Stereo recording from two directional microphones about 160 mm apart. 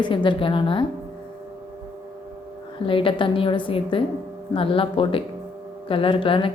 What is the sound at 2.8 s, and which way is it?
Speech, 30° left (ahead or behind).